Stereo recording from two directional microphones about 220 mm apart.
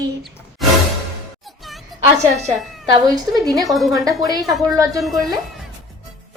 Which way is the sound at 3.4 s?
15° right (ahead or behind).